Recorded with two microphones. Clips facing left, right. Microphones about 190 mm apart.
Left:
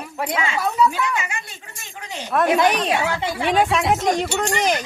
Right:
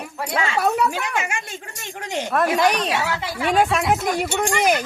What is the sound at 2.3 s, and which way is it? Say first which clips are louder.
Speech: left 2 dB; centre (ahead or behind).